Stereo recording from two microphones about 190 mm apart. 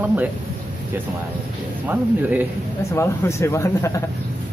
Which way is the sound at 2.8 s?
15° left (ahead or behind).